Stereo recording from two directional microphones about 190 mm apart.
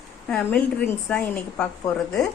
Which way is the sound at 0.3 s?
5° left (ahead or behind).